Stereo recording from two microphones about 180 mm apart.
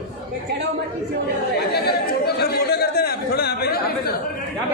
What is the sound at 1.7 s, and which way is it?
Chatter, 60° left (ahead or behind).